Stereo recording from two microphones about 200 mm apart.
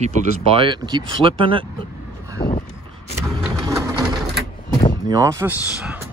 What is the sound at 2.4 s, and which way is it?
Vehicle, 45° left (ahead or behind).